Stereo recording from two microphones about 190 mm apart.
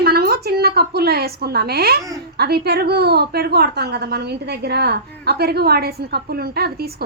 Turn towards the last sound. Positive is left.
turn(degrees=-55)  # may be behind; listen again after turning